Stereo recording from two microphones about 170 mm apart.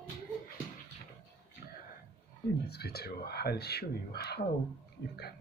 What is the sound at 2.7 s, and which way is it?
Speech, 70° left (ahead or behind).